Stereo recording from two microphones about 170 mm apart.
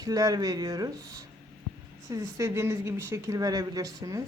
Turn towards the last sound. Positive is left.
turn(degrees=-20)  # may be behind; listen again after turning